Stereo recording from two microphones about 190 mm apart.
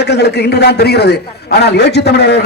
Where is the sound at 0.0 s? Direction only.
60° left (ahead or behind).